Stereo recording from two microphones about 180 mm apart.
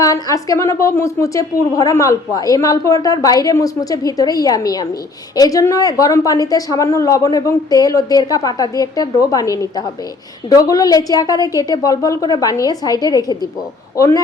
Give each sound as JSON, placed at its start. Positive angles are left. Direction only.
{"t": 0.0, "sound": "a woman's voice", "side_deg": 20}